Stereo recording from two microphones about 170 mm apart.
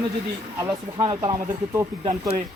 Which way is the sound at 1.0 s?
25° right (ahead or behind).